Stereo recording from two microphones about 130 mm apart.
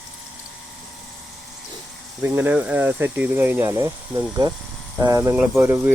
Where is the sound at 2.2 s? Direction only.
15° right (ahead or behind).